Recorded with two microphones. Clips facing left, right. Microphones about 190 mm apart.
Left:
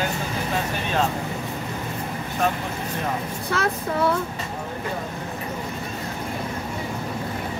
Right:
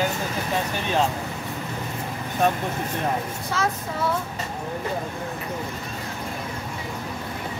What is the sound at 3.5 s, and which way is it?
Speech, 60° left (ahead or behind).